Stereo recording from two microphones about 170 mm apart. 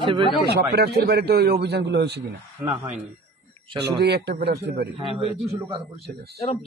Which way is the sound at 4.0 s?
75° right (ahead or behind).